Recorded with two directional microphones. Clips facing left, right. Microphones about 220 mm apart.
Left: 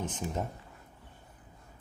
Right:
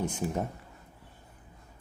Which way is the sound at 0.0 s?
10° right (ahead or behind).